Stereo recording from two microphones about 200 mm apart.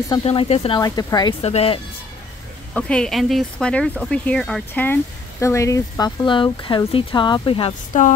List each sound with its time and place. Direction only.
0.1 s speech: 30° left (ahead or behind)
1.4 s speech: 30° left (ahead or behind)
2.7 s speech: 5° left (ahead or behind); by 7.7 s 25° left (ahead or behind)
7.9 s speech: 40° left (ahead or behind)